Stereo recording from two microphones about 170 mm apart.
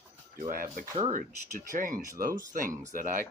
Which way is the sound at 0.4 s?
55° right (ahead or behind).